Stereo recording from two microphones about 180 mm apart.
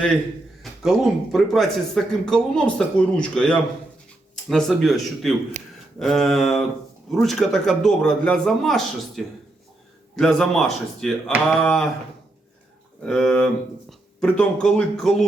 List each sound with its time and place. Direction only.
0.6 s speech: centre (ahead or behind)
13.0 s speech: 5° left (ahead or behind)